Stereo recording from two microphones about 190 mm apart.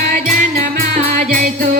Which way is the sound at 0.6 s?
40° right (ahead or behind).